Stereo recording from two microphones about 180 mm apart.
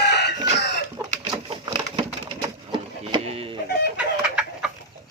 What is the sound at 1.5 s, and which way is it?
Bird, 30° right (ahead or behind).